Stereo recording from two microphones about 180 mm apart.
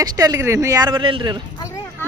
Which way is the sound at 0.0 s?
20° right (ahead or behind).